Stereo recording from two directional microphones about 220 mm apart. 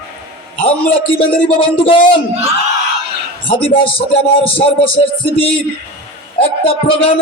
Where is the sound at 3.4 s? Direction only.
25° left (ahead or behind).